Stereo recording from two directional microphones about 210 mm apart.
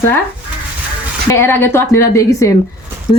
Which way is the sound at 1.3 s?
10° left (ahead or behind).